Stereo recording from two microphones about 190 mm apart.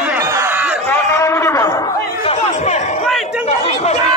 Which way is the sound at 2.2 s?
35° left (ahead or behind).